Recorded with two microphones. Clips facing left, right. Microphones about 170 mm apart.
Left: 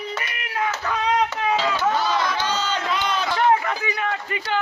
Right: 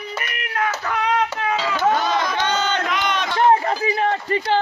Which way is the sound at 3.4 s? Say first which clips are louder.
Right 4 dB; 35° right (ahead or behind).